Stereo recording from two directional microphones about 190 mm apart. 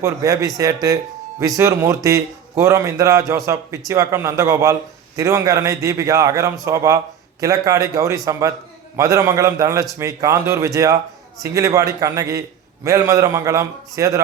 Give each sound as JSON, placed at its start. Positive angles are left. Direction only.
{"t": 0.0, "sound": "speech", "side_deg": -15}